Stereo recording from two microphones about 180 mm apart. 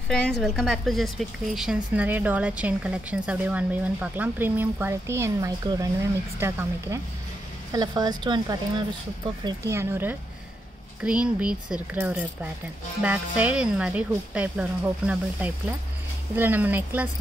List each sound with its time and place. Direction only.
0.1 s a woman's voice: 5° left (ahead or behind)